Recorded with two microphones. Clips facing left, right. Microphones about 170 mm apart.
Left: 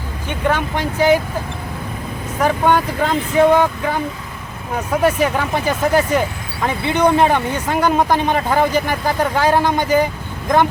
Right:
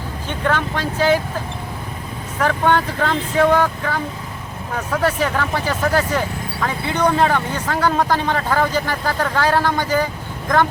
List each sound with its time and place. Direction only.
0.3 s speech: 15° left (ahead or behind)
2.4 s speech: 15° left (ahead or behind)